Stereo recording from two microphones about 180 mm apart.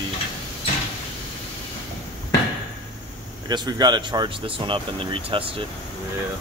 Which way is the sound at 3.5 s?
25° right (ahead or behind).